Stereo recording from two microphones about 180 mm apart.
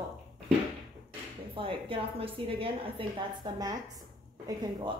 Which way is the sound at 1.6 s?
30° right (ahead or behind).